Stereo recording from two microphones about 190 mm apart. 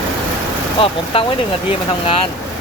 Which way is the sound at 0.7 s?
30° left (ahead or behind).